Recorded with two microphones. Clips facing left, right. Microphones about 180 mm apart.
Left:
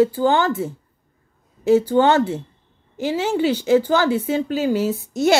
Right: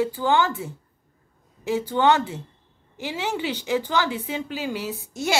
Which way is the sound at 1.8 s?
40° left (ahead or behind).